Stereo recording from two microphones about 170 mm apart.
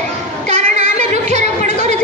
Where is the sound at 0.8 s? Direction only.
40° right (ahead or behind).